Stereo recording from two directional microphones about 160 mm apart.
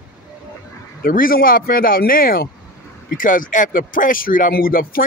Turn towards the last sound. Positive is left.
turn(degrees=65)  # may be behind; listen again after turning